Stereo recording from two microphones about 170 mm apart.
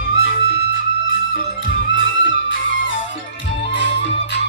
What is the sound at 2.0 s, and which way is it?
Music, 90° left.